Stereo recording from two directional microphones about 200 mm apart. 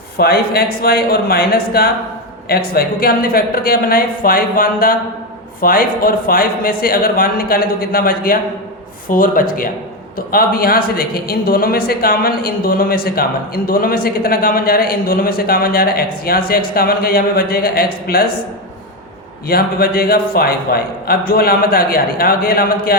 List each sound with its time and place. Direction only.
0.2 s a woman's voice: 50° left (ahead or behind)
19.5 s a woman's voice: 50° left (ahead or behind)